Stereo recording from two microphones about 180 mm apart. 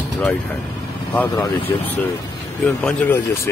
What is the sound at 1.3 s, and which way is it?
Speech, 25° left (ahead or behind).